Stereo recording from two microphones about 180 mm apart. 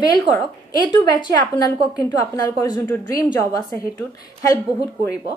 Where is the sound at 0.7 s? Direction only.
25° left (ahead or behind).